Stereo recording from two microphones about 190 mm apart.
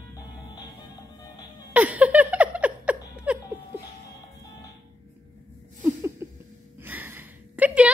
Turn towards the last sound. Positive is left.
turn(degrees=-5)  # may be behind; listen again after turning